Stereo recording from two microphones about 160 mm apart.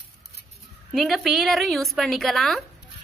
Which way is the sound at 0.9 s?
Centre (ahead or behind).